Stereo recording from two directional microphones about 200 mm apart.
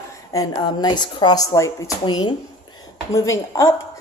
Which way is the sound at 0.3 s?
20° left (ahead or behind).